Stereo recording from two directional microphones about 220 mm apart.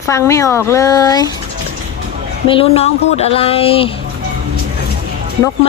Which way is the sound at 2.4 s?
25° left (ahead or behind).